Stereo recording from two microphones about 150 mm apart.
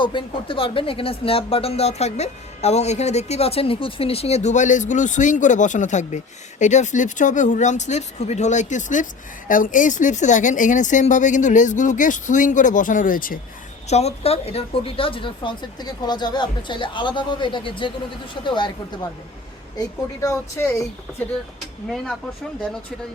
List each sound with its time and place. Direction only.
0.0 s speech: 35° left (ahead or behind); by 13.4 s 70° left (ahead or behind)
13.8 s speech: 45° left (ahead or behind)
20.2 s speech: 20° left (ahead or behind)